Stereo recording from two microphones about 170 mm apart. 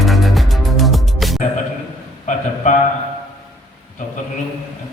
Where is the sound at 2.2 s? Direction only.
45° left (ahead or behind).